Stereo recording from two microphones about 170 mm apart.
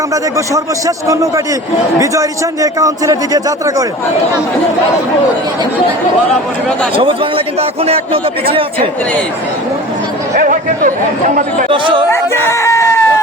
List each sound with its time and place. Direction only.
0.1 s a man's voice: 20° right (ahead or behind)
6.9 s a man's voice: 30° right (ahead or behind)
10.3 s a sound: 50° right (ahead or behind)
11.7 s a man's voice: 30° right (ahead or behind)
12.1 s chicken: 15° left (ahead or behind)